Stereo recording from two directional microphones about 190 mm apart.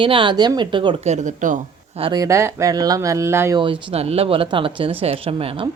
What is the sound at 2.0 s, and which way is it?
Speech, 20° right (ahead or behind).